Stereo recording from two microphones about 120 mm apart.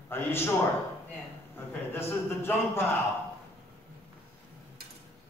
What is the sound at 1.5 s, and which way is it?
A man's voice, 20° left (ahead or behind).